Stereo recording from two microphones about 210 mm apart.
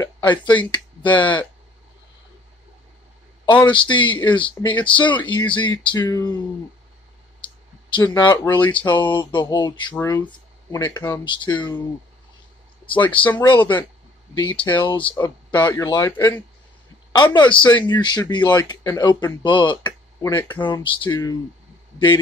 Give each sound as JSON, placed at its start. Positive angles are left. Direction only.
{"t": 0.0, "sound": "speech", "side_deg": 20}
{"t": 1.2, "sound": "speech", "side_deg": 10}
{"t": 3.4, "sound": "speech", "side_deg": 20}
{"t": 7.4, "sound": "clicking", "side_deg": 20}
{"t": 8.6, "sound": "speech", "side_deg": 20}
{"t": 14.3, "sound": "a man's voice", "side_deg": 20}